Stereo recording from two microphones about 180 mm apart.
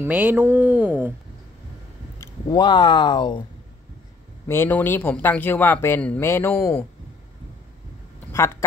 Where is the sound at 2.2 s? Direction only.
25° left (ahead or behind).